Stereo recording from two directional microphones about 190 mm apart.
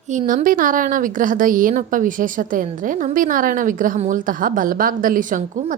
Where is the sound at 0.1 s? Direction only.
40° right (ahead or behind).